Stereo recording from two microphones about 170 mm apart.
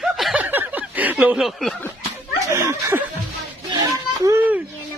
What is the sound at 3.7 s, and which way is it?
Child singing, 20° right (ahead or behind).